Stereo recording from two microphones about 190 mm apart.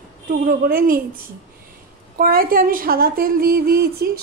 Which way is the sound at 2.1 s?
50° right (ahead or behind).